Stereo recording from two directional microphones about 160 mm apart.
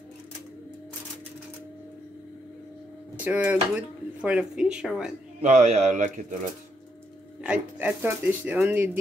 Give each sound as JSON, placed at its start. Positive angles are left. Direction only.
{"t": 3.3, "sound": "speech", "side_deg": -10}
{"t": 5.4, "sound": "speech", "side_deg": -45}
{"t": 7.4, "sound": "speech", "side_deg": -10}